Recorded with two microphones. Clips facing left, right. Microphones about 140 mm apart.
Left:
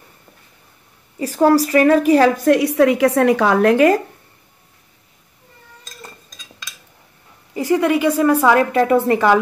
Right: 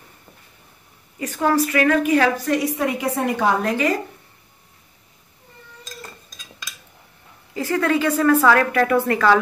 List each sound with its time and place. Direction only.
1.2 s a woman's voice: 35° left (ahead or behind)
2.4 s a woman's voice: 70° left (ahead or behind); by 3.7 s 90° left
3.7 s speech: 50° left (ahead or behind)
7.5 s a woman's voice: 15° left (ahead or behind)